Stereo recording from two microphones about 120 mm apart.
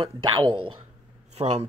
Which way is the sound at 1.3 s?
60° right (ahead or behind).